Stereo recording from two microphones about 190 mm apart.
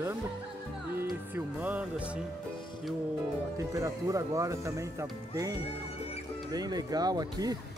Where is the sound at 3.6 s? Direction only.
15° right (ahead or behind).